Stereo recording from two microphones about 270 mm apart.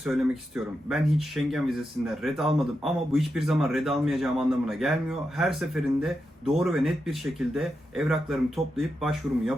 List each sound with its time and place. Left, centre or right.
0.0 s a man's voice: centre